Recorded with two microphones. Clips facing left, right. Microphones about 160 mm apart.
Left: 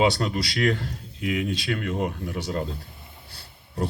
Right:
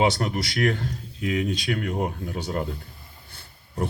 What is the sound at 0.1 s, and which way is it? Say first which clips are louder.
Speech: even; 20° right (ahead or behind).